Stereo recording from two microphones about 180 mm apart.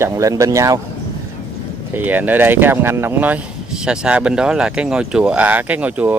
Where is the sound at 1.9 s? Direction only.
10° right (ahead or behind).